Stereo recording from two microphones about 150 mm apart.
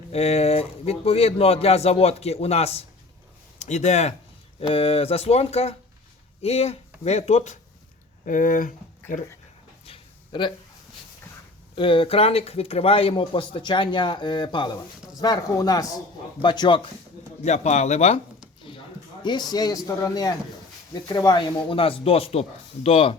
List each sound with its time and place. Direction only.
0.1 s speech: 45° left (ahead or behind)
8.2 s speech: 60° left (ahead or behind)
9.8 s dog: 35° left (ahead or behind)
11.7 s speech: 35° left (ahead or behind)
17.4 s speech: 50° left (ahead or behind)
19.2 s speech: 30° left (ahead or behind)